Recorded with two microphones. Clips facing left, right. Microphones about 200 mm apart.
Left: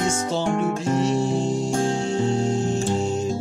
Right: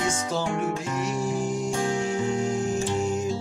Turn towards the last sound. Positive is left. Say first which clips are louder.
# left 2 dB
turn(degrees=30)  # may be behind; listen again after turning